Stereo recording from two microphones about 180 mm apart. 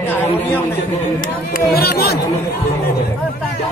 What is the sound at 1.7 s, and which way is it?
Speech, 60° left (ahead or behind).